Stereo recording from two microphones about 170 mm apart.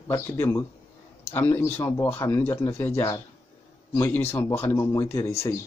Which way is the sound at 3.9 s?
15° left (ahead or behind).